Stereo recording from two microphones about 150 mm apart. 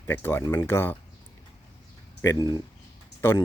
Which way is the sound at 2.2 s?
20° left (ahead or behind).